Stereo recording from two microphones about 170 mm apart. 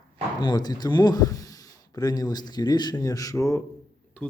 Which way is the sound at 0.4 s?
25° left (ahead or behind).